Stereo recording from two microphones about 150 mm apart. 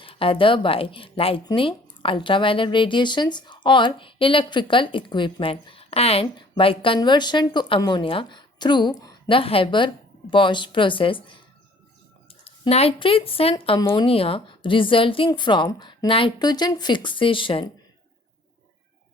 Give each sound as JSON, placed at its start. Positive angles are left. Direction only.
{"t": 0.0, "sound": "speech", "side_deg": 35}
{"t": 12.5, "sound": "speech", "side_deg": 40}